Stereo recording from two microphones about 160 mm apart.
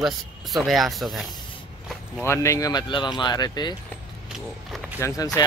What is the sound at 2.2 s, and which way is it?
Speech, 15° left (ahead or behind).